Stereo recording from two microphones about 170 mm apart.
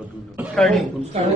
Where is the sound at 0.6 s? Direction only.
Centre (ahead or behind).